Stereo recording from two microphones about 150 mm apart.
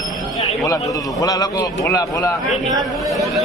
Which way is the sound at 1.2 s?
25° left (ahead or behind).